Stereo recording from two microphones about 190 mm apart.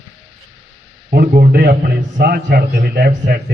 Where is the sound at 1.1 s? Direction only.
50° right (ahead or behind).